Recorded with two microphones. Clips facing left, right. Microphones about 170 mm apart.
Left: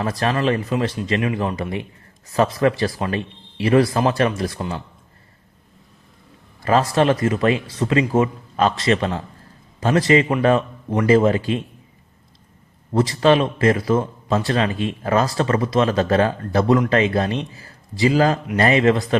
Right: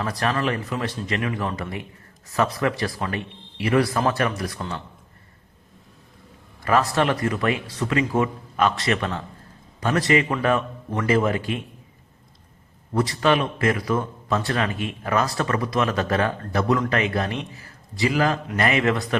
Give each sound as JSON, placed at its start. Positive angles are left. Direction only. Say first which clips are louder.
{"t": 0.0, "sound": "a man's voice", "louder": "left 4 dB", "side_deg": 25}
{"t": 6.7, "sound": "a man's voice", "louder": "left 4 dB", "side_deg": 20}
{"t": 12.9, "sound": "a man's voice", "louder": "left 5 dB", "side_deg": 25}